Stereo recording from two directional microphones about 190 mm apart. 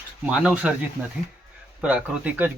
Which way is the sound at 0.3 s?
5° right (ahead or behind).